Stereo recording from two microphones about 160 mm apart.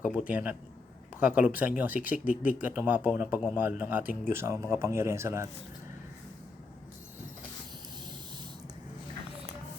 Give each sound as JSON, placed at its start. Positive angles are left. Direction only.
{"t": 0.0, "sound": "speech", "side_deg": -10}